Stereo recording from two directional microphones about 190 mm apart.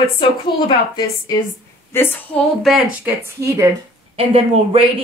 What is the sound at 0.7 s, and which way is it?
A woman's voice, 20° left (ahead or behind).